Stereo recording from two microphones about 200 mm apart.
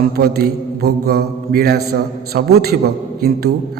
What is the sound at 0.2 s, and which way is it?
A man's voice, 50° right (ahead or behind).